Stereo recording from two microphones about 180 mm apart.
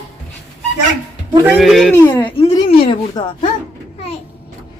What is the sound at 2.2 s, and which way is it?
Speech, 30° left (ahead or behind).